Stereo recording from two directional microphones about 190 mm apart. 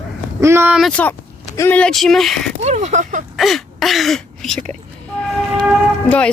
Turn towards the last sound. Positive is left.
turn(degrees=5)  # may be behind; listen again after turning